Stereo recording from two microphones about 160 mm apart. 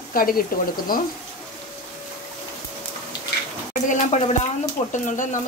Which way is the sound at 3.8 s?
50° left (ahead or behind).